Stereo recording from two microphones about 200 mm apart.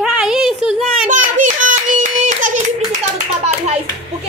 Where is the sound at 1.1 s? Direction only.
40° right (ahead or behind).